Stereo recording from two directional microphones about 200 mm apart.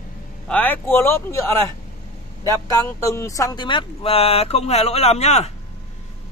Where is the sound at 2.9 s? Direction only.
15° left (ahead or behind); by 5.5 s 30° left (ahead or behind).